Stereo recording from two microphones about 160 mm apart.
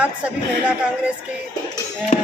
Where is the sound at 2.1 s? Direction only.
55° left (ahead or behind).